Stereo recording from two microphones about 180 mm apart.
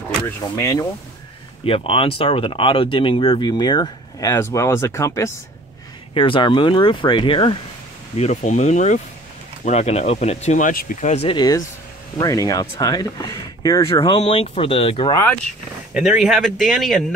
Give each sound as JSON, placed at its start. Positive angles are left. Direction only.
{"t": 0.4, "sound": "speech", "side_deg": 20}
{"t": 1.6, "sound": "speech", "side_deg": 30}
{"t": 6.1, "sound": "speech", "side_deg": 30}
{"t": 8.2, "sound": "speech", "side_deg": 40}
{"t": 11.3, "sound": "speech", "side_deg": 20}
{"t": 15.9, "sound": "speech", "side_deg": -5}